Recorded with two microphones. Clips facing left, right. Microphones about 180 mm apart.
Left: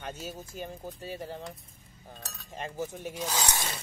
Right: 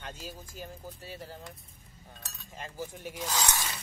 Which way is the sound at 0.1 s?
20° left (ahead or behind).